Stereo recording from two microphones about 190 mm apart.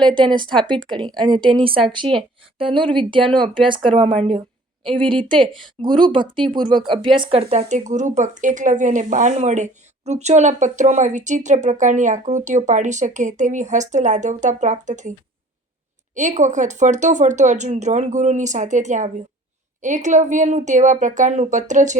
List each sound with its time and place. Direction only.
0.3 s speech: 25° right (ahead or behind); by 15.1 s 40° right (ahead or behind)
16.1 s speech: 40° right (ahead or behind)